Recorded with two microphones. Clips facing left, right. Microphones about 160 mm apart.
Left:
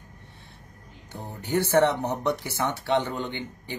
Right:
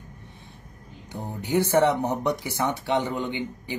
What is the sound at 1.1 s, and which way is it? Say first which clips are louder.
Speech: right 2 dB; 15° right (ahead or behind).